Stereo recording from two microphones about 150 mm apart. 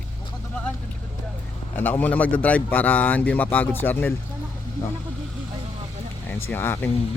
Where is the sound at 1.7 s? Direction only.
10° left (ahead or behind).